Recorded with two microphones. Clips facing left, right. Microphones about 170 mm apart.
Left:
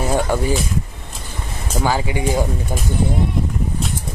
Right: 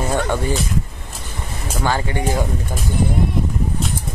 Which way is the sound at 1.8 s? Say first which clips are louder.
Left 1 dB; 10° left (ahead or behind).